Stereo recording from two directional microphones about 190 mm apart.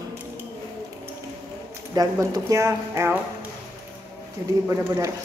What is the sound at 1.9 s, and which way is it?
Speech, 20° right (ahead or behind).